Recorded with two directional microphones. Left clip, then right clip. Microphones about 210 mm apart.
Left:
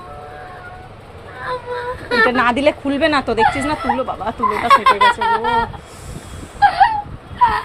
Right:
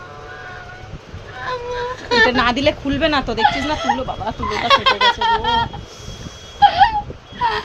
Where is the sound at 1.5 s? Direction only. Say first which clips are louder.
Even; 30° right (ahead or behind).